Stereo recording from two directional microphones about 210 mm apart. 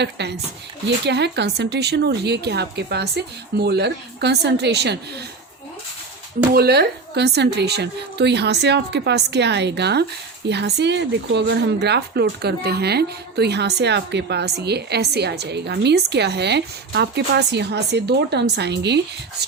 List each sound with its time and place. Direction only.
0.0 s speech: 55° right (ahead or behind)
6.5 s speech: 50° right (ahead or behind)